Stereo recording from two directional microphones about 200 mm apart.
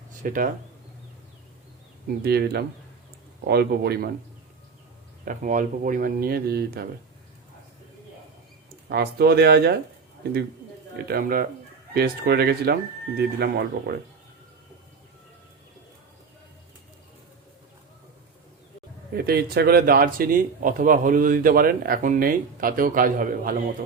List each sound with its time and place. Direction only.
0.1 s speech: 40° right (ahead or behind)
2.2 s a man's voice: 55° right (ahead or behind)
5.2 s speech: 40° right (ahead or behind)
8.9 s speech: 55° right (ahead or behind)
10.9 s speech: 50° right (ahead or behind)
19.1 s speech: 50° right (ahead or behind)